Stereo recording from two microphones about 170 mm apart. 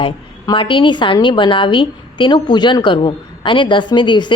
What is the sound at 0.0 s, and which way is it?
A woman's voice, 30° left (ahead or behind).